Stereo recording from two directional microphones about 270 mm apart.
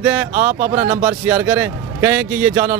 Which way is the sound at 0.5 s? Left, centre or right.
Right.